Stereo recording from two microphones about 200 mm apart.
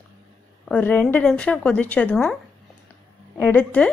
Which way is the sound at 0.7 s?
10° left (ahead or behind).